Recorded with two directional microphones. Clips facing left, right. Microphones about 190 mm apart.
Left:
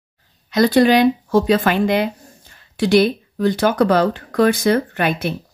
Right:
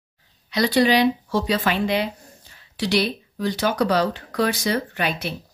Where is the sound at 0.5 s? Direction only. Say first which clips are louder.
Left 5 dB; 50° left (ahead or behind).